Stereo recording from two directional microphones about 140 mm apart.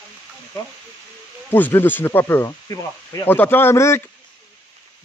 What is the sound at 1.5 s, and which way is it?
Speech, 15° left (ahead or behind).